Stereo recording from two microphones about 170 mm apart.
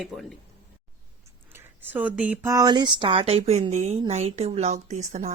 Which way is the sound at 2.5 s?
25° right (ahead or behind).